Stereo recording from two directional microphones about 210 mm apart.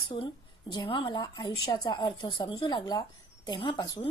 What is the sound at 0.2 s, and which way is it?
A woman's voice, 20° left (ahead or behind).